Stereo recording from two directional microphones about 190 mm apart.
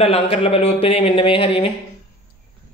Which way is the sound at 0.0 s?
30° left (ahead or behind).